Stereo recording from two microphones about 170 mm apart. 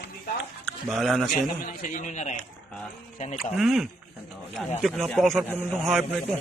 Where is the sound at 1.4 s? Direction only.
50° left (ahead or behind).